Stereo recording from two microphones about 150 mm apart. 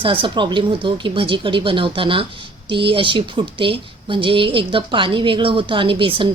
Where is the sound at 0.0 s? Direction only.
35° right (ahead or behind).